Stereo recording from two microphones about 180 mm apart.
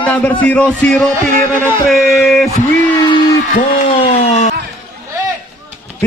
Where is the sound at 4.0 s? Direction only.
35° left (ahead or behind).